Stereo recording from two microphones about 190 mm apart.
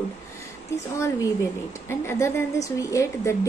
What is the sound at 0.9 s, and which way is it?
A woman's voice, 15° left (ahead or behind).